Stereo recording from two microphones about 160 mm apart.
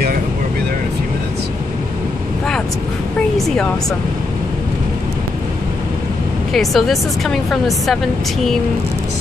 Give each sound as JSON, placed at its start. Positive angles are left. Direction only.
{"t": 3.3, "sound": "speech", "side_deg": 0}
{"t": 6.5, "sound": "speech", "side_deg": 0}